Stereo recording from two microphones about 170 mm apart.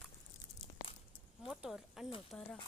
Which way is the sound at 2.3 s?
10° left (ahead or behind).